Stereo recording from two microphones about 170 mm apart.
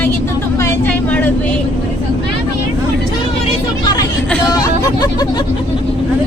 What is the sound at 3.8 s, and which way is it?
Speech, 25° left (ahead or behind).